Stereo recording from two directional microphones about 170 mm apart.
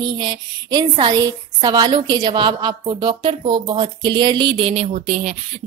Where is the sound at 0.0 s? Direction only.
25° right (ahead or behind).